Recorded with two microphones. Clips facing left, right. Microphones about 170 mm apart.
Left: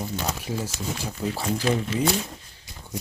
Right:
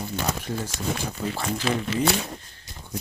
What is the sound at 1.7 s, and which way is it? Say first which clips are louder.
Speech: even; 80° right.